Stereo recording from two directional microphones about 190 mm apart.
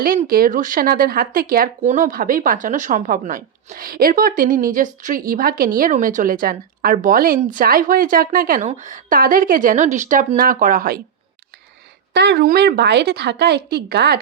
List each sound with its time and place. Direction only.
0.3 s speech: 50° right (ahead or behind)
12.1 s speech: 60° right (ahead or behind)